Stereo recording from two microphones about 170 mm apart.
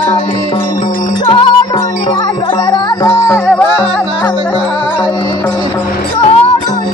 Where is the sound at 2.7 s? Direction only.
25° left (ahead or behind).